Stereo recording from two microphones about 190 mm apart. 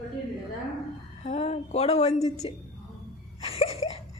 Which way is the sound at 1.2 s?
35° left (ahead or behind).